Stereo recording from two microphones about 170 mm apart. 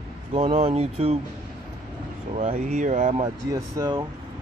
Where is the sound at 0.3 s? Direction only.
35° right (ahead or behind).